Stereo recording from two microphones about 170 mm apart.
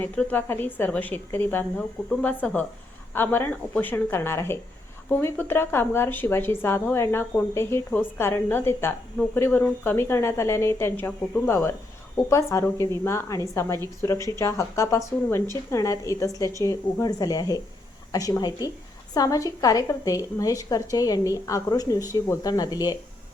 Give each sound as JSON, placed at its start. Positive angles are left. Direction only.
{"t": 0.0, "sound": "a woman's voice", "side_deg": 10}